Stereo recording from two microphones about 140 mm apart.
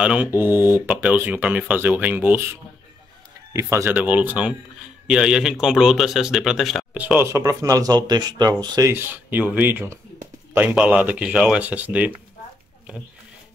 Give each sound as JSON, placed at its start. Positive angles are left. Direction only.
{"t": 0.0, "sound": "speech", "side_deg": -10}
{"t": 3.7, "sound": "speech", "side_deg": -15}
{"t": 7.0, "sound": "speech", "side_deg": -10}
{"t": 8.9, "sound": "speech", "side_deg": -15}